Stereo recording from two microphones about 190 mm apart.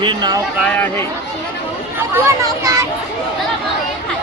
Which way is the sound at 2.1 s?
15° right (ahead or behind).